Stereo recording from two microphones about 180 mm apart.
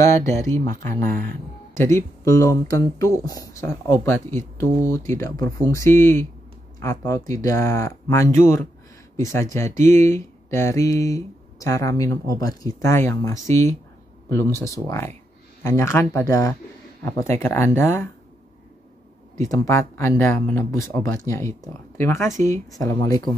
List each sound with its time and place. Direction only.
0.0 s speech: 15° left (ahead or behind)
19.5 s speech: 15° left (ahead or behind)